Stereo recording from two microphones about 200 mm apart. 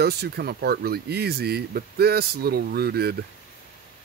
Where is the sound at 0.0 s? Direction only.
55° right (ahead or behind).